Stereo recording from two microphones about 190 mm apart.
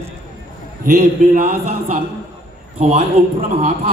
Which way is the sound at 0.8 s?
45° right (ahead or behind).